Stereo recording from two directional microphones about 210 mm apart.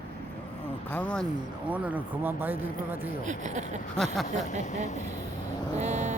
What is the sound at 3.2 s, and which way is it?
Speech, 35° right (ahead or behind).